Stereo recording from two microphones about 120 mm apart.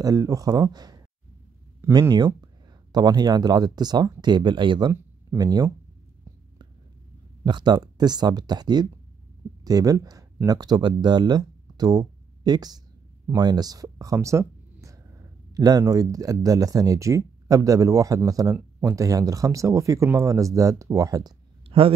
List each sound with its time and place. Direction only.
0.0 s speech: 30° right (ahead or behind)
7.4 s speech: 40° right (ahead or behind)
21.6 s a sound: 50° right (ahead or behind)